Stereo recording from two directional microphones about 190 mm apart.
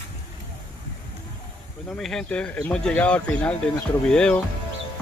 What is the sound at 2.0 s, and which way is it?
Speech, 5° left (ahead or behind).